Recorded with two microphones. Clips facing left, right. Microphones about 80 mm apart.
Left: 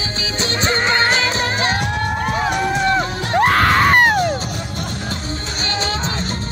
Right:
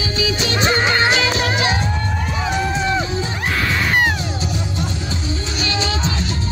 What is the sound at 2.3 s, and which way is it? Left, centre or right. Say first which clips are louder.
Run: left 1 dB; left.